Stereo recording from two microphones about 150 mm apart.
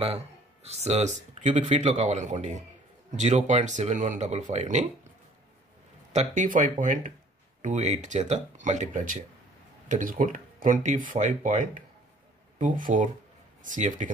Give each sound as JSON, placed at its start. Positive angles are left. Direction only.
{"t": 0.7, "sound": "speech", "side_deg": -45}
{"t": 6.1, "sound": "speech", "side_deg": -60}